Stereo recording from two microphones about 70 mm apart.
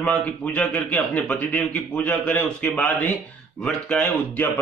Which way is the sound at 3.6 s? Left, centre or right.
Centre.